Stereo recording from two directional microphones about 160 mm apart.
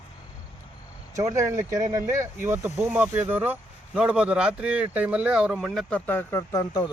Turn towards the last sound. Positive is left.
turn(degrees=25)  # may be behind; listen again after turning